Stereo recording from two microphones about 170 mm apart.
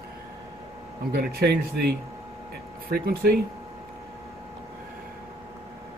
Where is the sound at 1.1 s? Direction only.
65° right (ahead or behind).